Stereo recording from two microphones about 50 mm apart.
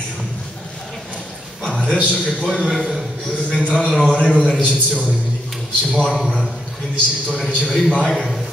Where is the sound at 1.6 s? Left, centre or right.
Centre.